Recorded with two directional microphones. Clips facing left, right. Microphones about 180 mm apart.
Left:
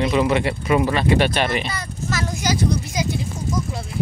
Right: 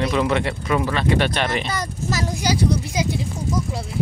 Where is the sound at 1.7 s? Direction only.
35° right (ahead or behind).